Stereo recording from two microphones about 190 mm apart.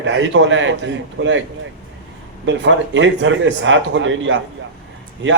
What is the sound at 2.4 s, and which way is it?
A man's voice, 75° right (ahead or behind).